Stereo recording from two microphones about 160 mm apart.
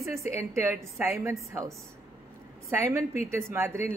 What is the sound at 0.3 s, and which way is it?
A woman's voice, 15° right (ahead or behind).